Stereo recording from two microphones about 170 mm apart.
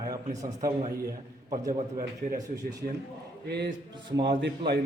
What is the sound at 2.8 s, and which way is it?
Speech, 50° right (ahead or behind).